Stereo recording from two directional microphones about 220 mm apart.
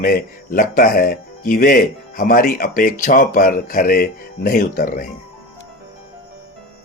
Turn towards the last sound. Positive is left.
turn(degrees=40)  # may be behind; listen again after turning